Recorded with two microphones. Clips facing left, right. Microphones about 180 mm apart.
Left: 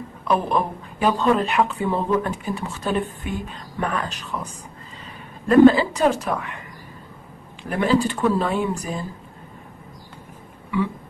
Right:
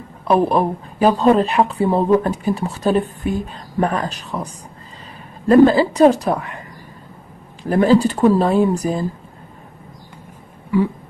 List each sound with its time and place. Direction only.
0.3 s speech: 35° right (ahead or behind)
5.5 s speech: 35° right (ahead or behind)
7.6 s speech: 35° right (ahead or behind)